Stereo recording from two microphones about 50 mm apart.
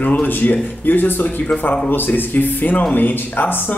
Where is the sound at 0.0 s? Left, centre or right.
Left.